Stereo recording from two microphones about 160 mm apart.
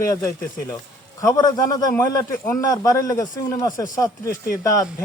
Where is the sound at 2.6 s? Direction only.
20° left (ahead or behind).